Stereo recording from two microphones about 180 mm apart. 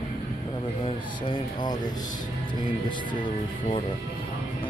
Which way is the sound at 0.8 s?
25° left (ahead or behind).